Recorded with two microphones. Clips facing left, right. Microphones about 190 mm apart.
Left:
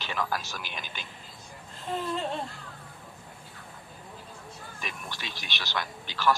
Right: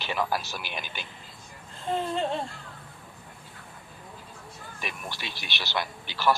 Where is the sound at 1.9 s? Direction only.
30° right (ahead or behind).